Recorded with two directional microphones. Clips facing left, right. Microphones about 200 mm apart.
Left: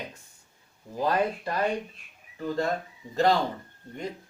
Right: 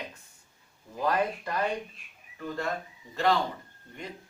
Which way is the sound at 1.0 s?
30° left (ahead or behind).